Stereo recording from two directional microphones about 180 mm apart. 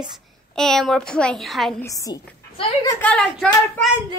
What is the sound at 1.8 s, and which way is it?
A woman's voice, 20° left (ahead or behind).